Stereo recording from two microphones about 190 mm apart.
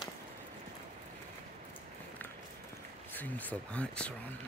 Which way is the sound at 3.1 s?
10° left (ahead or behind).